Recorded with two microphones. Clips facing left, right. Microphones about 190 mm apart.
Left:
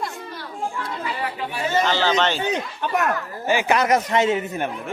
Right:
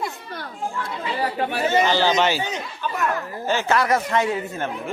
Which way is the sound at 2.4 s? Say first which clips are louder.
Left 3 dB; 65° left (ahead or behind).